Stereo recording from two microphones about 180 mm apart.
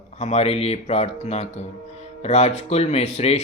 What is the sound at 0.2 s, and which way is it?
Speech, 35° left (ahead or behind).